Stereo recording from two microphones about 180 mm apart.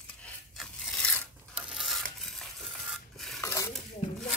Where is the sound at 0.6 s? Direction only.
5° left (ahead or behind).